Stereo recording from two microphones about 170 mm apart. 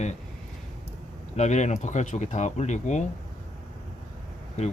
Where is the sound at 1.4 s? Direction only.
45° left (ahead or behind).